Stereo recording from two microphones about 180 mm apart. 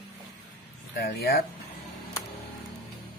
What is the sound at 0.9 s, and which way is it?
Speech, 60° left (ahead or behind).